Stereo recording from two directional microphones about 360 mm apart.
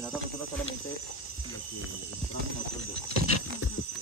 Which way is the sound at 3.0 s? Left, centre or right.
Right.